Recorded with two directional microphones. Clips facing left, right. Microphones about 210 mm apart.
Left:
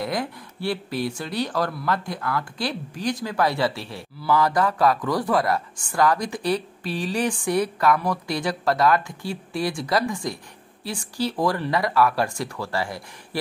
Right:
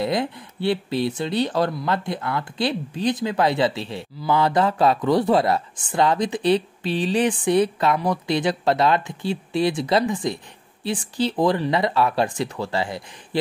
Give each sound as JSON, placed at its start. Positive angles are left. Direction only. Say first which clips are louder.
{"t": 0.0, "sound": "speech", "louder": "right 4 dB", "side_deg": -25}